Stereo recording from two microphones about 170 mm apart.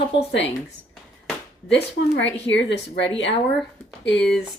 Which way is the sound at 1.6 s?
90° left.